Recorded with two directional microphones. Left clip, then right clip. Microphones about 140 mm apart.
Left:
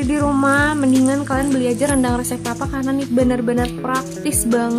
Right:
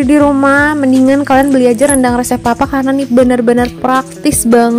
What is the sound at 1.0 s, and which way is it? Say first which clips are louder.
Speech: right 10 dB; 50° right (ahead or behind).